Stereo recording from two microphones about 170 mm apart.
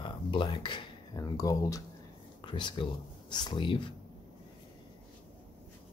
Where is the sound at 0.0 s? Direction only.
30° left (ahead or behind).